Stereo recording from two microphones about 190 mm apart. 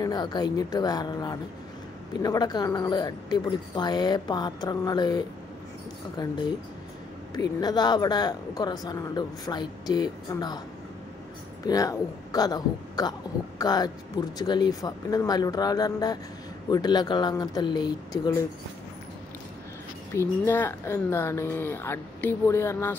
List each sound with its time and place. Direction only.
0.0 s a woman's voice: 20° left (ahead or behind)
7.3 s a woman's voice: 20° left (ahead or behind)
11.6 s a woman's voice: 20° left (ahead or behind)
20.2 s speech: 15° left (ahead or behind)